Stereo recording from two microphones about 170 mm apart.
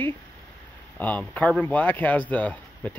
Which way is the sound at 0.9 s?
10° left (ahead or behind).